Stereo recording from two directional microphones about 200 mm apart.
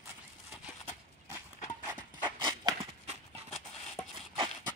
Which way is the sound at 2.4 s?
25° right (ahead or behind).